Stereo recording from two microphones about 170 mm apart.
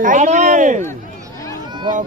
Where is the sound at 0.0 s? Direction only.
50° right (ahead or behind).